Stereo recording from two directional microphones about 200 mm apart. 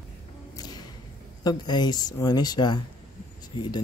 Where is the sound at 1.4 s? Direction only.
20° left (ahead or behind).